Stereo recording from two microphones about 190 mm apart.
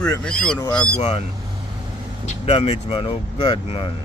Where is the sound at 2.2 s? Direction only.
35° left (ahead or behind).